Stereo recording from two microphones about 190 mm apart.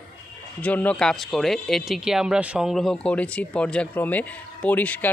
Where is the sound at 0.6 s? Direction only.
5° left (ahead or behind).